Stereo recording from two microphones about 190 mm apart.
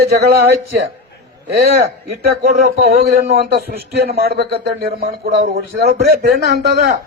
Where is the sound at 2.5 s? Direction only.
55° right (ahead or behind).